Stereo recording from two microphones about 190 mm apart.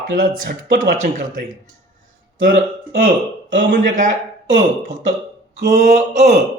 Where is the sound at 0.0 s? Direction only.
45° right (ahead or behind).